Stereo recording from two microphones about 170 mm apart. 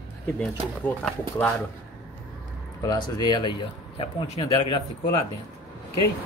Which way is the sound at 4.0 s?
35° left (ahead or behind).